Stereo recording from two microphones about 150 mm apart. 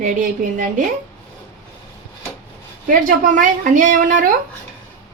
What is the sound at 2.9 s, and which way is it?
A woman's voice, 65° right (ahead or behind).